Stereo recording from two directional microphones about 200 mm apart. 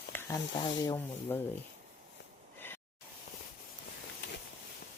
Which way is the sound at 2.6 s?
10° left (ahead or behind).